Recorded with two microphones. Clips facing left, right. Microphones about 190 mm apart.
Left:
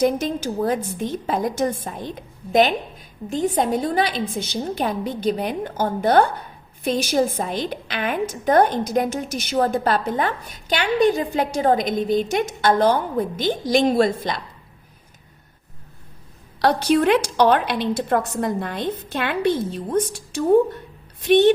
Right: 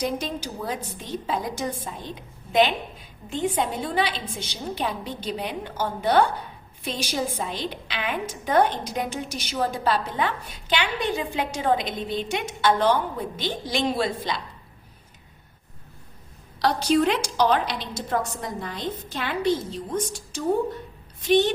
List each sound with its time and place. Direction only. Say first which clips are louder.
0.0 s a woman's voice: left 8 dB; 50° left (ahead or behind)
16.6 s a woman's voice: left 3 dB; 60° left (ahead or behind)